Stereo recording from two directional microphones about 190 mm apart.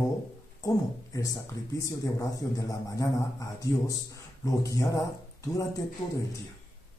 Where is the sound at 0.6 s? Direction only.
20° left (ahead or behind).